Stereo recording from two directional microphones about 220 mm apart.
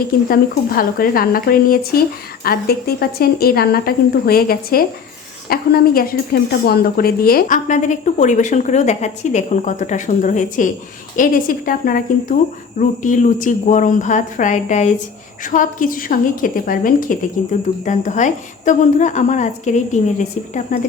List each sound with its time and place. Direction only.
0.3 s a woman's voice: 40° left (ahead or behind)